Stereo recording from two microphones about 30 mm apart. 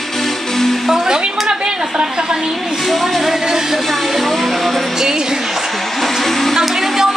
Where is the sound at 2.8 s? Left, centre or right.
Centre.